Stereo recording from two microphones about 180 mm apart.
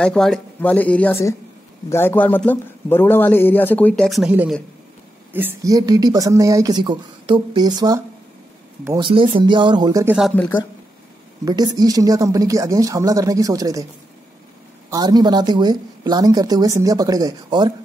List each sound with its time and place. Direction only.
0.0 s a man's voice: 5° left (ahead or behind); by 10.0 s 20° right (ahead or behind)
10.0 s speech: 5° right (ahead or behind)
10.3 s a man's voice: 10° left (ahead or behind)
11.4 s speech: 20° right (ahead or behind)
14.9 s speech: 20° right (ahead or behind)